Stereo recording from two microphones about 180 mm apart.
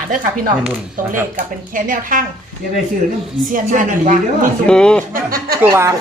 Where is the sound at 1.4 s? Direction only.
50° right (ahead or behind).